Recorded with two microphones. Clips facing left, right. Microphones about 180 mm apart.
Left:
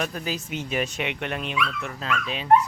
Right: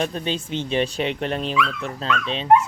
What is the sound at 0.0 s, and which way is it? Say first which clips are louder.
Speech: right 4 dB; 30° right (ahead or behind).